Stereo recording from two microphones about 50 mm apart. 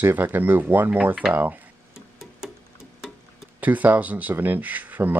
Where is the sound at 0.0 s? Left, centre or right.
Right.